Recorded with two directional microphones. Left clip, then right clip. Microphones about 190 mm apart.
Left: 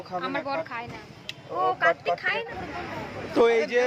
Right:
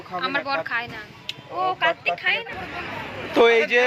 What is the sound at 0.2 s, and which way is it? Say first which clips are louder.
Speech: right 5 dB; 10° left (ahead or behind).